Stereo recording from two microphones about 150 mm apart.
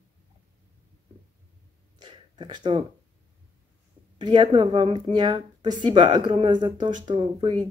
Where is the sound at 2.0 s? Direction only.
30° right (ahead or behind).